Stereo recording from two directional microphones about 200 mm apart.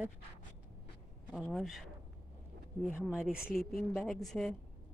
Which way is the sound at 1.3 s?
Centre (ahead or behind).